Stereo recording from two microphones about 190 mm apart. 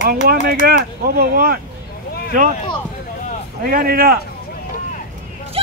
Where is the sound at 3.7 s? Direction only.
50° right (ahead or behind).